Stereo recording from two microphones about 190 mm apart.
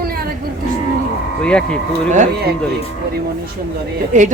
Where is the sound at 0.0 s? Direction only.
50° right (ahead or behind).